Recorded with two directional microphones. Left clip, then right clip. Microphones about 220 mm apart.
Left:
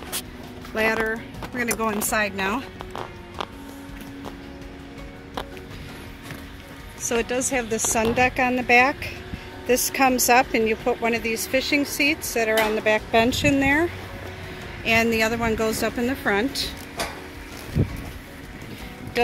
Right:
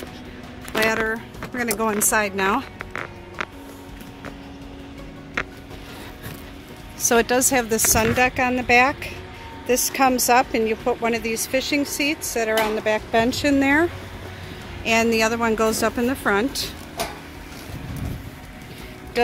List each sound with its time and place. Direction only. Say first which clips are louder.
0.8 s a woman's voice: even; centre (ahead or behind)
7.1 s speech: right 6 dB; 20° right (ahead or behind)
7.9 s speech: right 1 dB; 5° right (ahead or behind)
13.6 s a woman's voice: right 4 dB; 15° right (ahead or behind)
14.9 s a woman's voice: right 1 dB; 5° right (ahead or behind)